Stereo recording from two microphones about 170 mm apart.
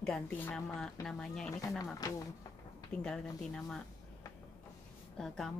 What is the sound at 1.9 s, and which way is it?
Speech, 20° left (ahead or behind).